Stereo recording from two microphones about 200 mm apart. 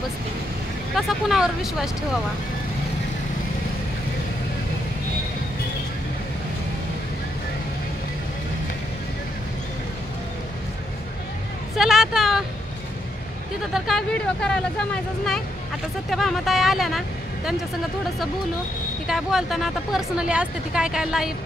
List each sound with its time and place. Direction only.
0.9 s speech: centre (ahead or behind)
11.7 s a sound: centre (ahead or behind)
13.7 s speech: centre (ahead or behind)
19.0 s speech: centre (ahead or behind)